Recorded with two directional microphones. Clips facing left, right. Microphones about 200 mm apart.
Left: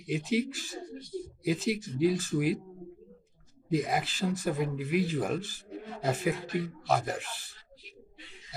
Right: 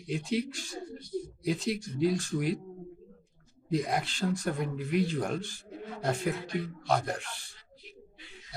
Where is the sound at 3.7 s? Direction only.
Centre (ahead or behind).